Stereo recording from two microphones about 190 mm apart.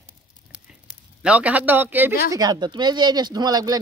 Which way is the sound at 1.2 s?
5° right (ahead or behind).